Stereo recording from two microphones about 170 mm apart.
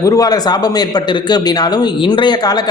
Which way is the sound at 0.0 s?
20° left (ahead or behind).